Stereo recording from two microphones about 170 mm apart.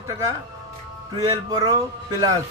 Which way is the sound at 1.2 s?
20° right (ahead or behind).